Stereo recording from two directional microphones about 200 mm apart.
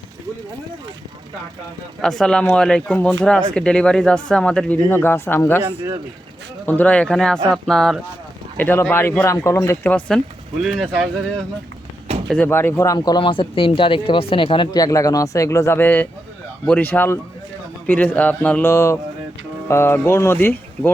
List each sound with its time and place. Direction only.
2.0 s speech: 5° left (ahead or behind)
5.6 s speech: 20° right (ahead or behind)
6.7 s speech: 10° left (ahead or behind)
12.3 s speech: 10° left (ahead or behind)